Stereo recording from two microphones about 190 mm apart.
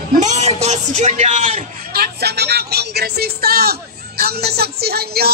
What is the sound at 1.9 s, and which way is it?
Speech, 55° right (ahead or behind).